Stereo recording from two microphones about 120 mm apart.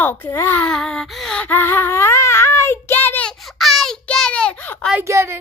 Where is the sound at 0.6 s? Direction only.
5° left (ahead or behind).